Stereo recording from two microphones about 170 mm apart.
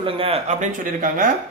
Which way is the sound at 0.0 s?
35° right (ahead or behind).